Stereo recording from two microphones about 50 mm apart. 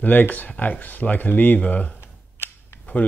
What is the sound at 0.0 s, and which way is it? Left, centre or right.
Speech, left.